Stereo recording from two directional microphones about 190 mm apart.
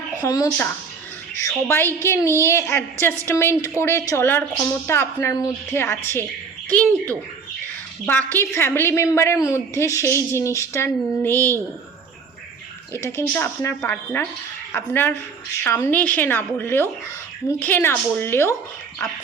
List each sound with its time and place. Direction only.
0.2 s speech: 20° left (ahead or behind)
1.6 s a woman's voice: 10° left (ahead or behind)
8.0 s a woman's voice: 10° left (ahead or behind)
11.3 s speech: 15° right (ahead or behind)
12.9 s a woman's voice: 10° left (ahead or behind)